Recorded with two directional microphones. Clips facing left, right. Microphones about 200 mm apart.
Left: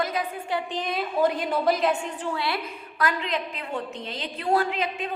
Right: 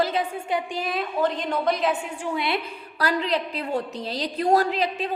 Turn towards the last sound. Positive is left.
turn(degrees=-35)  # may be behind; listen again after turning